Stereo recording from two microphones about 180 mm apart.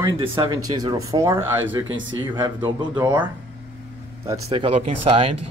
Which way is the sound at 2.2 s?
25° right (ahead or behind).